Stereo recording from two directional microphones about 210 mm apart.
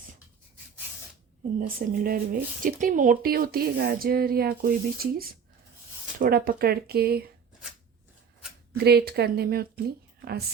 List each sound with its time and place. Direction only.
1.5 s speech: 40° right (ahead or behind)
8.8 s speech: 50° right (ahead or behind)